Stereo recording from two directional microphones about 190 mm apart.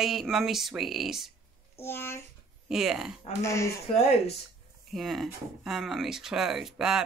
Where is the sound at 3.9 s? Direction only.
35° left (ahead or behind).